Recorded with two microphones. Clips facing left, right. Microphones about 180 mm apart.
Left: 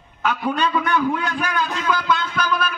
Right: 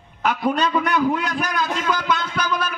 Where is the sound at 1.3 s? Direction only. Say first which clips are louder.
Even; 40° right (ahead or behind).